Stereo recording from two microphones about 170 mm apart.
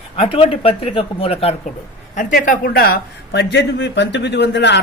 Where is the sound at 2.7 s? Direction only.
65° left (ahead or behind).